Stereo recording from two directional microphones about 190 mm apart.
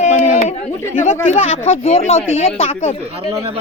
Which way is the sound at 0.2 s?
50° left (ahead or behind).